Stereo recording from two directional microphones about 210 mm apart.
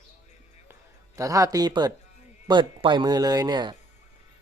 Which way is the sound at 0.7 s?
15° right (ahead or behind).